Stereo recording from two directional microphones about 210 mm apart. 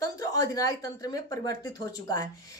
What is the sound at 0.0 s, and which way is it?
A woman's voice, 15° left (ahead or behind).